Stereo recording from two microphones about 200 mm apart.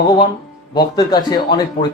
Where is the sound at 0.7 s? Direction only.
20° left (ahead or behind).